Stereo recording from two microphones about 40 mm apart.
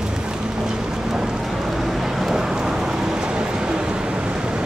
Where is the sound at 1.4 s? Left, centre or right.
Centre; by 4.6 s right.